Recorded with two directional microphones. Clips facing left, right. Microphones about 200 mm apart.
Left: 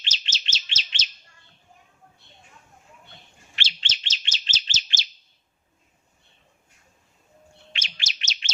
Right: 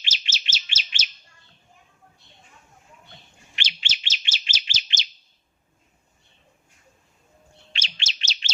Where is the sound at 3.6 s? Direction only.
10° right (ahead or behind).